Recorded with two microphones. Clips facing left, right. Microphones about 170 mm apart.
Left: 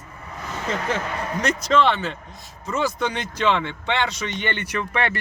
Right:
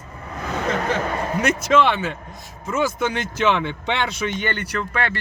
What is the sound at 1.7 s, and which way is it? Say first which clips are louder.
Speech: right 1 dB; 5° right (ahead or behind).